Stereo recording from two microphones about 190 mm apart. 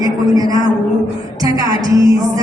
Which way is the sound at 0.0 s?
20° right (ahead or behind).